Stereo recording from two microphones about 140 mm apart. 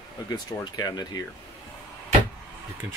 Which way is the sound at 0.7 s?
30° left (ahead or behind).